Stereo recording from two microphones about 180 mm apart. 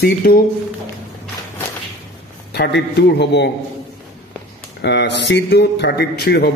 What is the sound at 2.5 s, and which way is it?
A man's voice, 65° left (ahead or behind).